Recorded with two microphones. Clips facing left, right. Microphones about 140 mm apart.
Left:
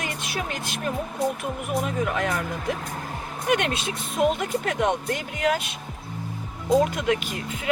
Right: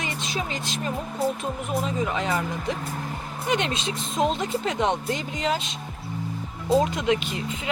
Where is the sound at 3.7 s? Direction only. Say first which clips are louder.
Even; 10° left (ahead or behind).